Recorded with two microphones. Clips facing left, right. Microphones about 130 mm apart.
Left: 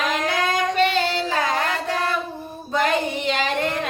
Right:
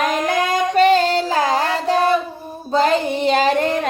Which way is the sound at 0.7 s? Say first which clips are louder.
Right 7 dB; 40° right (ahead or behind).